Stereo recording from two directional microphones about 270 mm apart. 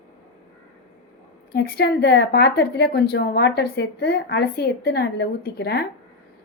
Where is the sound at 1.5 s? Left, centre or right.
Left.